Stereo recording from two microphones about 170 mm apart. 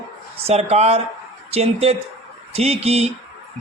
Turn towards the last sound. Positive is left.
turn(degrees=-40)  # may be behind; listen again after turning